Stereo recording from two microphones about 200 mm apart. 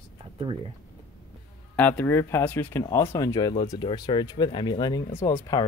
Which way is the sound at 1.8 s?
10° left (ahead or behind).